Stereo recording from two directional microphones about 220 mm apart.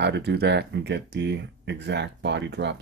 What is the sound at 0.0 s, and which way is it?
Speech, 50° right (ahead or behind).